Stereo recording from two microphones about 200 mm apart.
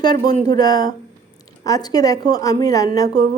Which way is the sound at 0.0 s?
20° left (ahead or behind).